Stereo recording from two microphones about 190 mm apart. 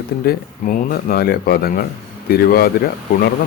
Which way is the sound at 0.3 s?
45° left (ahead or behind).